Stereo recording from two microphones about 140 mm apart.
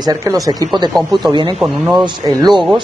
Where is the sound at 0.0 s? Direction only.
25° right (ahead or behind).